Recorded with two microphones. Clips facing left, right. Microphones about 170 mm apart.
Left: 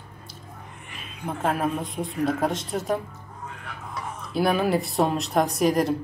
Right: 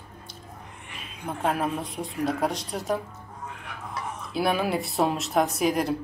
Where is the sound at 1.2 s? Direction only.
Centre (ahead or behind).